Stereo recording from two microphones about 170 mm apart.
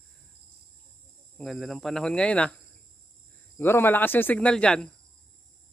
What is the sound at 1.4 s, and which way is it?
Speech, centre (ahead or behind).